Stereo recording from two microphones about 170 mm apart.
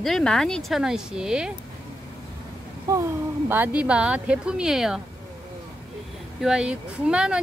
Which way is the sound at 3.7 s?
5° right (ahead or behind).